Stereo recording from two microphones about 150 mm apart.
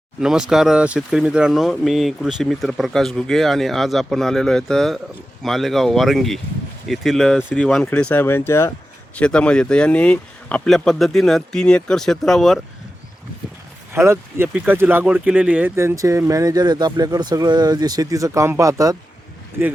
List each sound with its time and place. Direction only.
0.2 s speech: 5° right (ahead or behind)
13.9 s speech: 15° right (ahead or behind)